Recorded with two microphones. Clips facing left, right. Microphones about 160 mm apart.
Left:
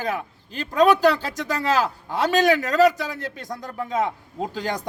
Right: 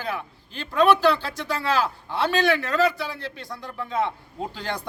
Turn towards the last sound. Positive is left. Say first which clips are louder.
# left 3 dB
turn(degrees=45)  # may be behind; listen again after turning